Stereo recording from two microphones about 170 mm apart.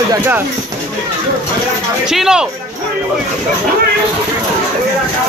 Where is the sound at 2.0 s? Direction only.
5° right (ahead or behind).